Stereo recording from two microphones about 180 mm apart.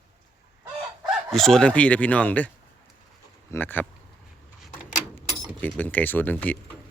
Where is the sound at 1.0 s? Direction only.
Centre (ahead or behind).